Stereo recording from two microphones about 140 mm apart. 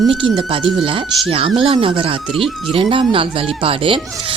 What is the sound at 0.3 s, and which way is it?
Speech, 40° right (ahead or behind).